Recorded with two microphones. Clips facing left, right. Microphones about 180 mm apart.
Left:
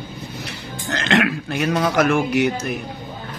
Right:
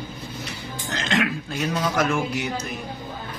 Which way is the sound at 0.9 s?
70° left (ahead or behind).